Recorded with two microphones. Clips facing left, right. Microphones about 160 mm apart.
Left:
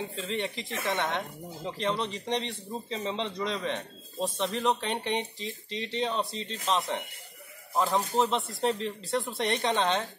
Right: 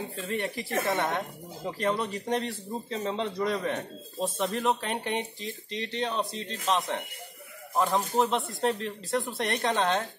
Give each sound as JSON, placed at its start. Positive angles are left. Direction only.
{"t": 0.2, "sound": "a woman's voice", "side_deg": -5}